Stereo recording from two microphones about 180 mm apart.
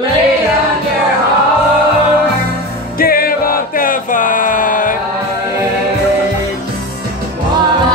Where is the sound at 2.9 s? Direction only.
55° left (ahead or behind).